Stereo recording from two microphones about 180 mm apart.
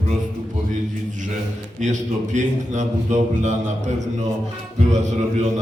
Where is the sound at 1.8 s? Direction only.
40° right (ahead or behind).